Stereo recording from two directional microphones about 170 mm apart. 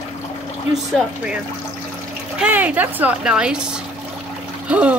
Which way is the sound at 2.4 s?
10° right (ahead or behind).